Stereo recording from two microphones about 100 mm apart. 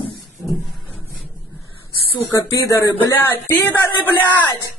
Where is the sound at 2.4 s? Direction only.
30° left (ahead or behind).